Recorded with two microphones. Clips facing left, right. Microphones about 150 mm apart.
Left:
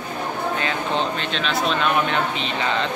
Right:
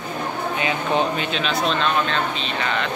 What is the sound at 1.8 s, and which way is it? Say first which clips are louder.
A woman's voice: left 1 dB; 15° left (ahead or behind).